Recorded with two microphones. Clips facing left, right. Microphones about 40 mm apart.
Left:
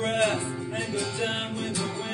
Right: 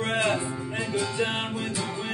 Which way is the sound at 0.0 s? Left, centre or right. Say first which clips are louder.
Even; right.